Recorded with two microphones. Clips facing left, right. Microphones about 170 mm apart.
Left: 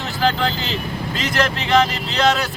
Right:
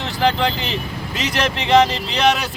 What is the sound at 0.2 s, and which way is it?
Speech, 20° right (ahead or behind).